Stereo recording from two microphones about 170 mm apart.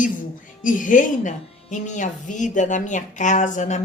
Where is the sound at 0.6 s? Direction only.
50° left (ahead or behind).